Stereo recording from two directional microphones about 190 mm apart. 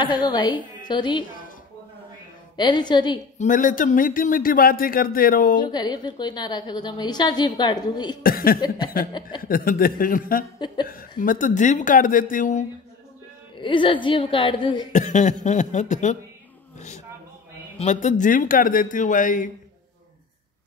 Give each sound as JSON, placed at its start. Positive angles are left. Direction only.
{"t": 0.0, "sound": "a woman's voice", "side_deg": 25}
{"t": 2.5, "sound": "a woman's voice", "side_deg": 25}
{"t": 3.3, "sound": "speech", "side_deg": 45}
{"t": 5.6, "sound": "a woman's voice", "side_deg": 20}
{"t": 8.2, "sound": "speech", "side_deg": 50}
{"t": 8.5, "sound": "a woman's voice", "side_deg": 20}
{"t": 9.4, "sound": "speech", "side_deg": 50}
{"t": 13.6, "sound": "a woman's voice", "side_deg": 25}
{"t": 14.9, "sound": "speech", "side_deg": 40}
{"t": 16.7, "sound": "a sound", "side_deg": 40}
{"t": 17.7, "sound": "speech", "side_deg": 40}